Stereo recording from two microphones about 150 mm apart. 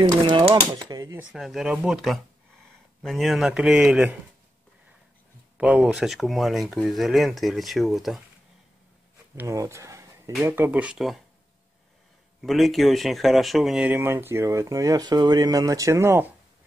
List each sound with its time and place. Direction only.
0.2 s speech: 35° right (ahead or behind)
1.3 s speech: centre (ahead or behind)
5.6 s speech: 10° right (ahead or behind)
9.3 s a sound: 20° right (ahead or behind)
10.4 s speech: 15° right (ahead or behind)
12.4 s speech: centre (ahead or behind); by 16.3 s 15° right (ahead or behind)